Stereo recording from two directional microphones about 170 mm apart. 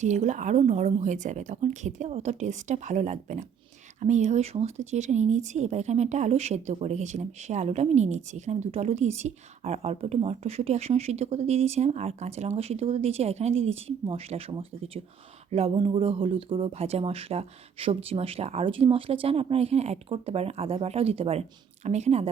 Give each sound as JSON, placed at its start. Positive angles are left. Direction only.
{"t": 0.0, "sound": "speech", "side_deg": -45}